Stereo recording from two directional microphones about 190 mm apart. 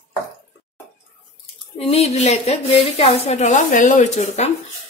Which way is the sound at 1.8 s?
35° left (ahead or behind).